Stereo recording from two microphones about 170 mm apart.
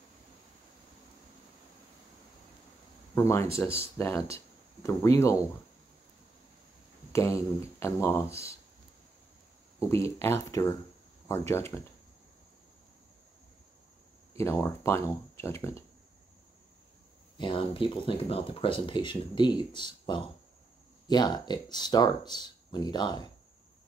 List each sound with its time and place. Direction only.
3.2 s speech: 15° left (ahead or behind)
7.1 s speech: 15° left (ahead or behind)
9.8 s speech: 15° left (ahead or behind)
14.4 s speech: 15° left (ahead or behind)
17.4 s speech: 30° left (ahead or behind)